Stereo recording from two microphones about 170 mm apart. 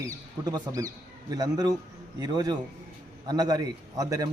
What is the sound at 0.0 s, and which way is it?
A man's voice, 20° right (ahead or behind).